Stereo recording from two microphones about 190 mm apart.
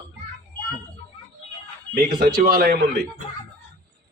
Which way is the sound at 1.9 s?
50° right (ahead or behind).